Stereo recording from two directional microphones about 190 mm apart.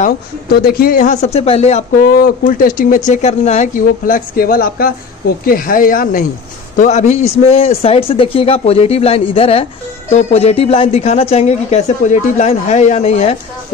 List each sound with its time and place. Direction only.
0.0 s speech: 50° left (ahead or behind)
3.1 s speech: 35° left (ahead or behind)
6.8 s speech: 35° left (ahead or behind)